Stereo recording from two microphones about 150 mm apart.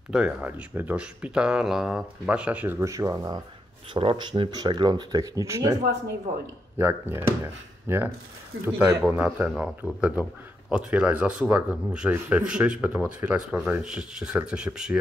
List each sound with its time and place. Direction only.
0.1 s speech: 5° right (ahead or behind); by 3.3 s 20° right (ahead or behind)
3.9 s speech: 35° right (ahead or behind)
6.8 s speech: 15° right (ahead or behind)